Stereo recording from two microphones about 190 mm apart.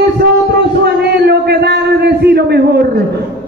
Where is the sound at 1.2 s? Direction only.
60° right (ahead or behind).